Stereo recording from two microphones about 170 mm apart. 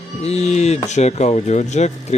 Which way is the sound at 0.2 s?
40° left (ahead or behind).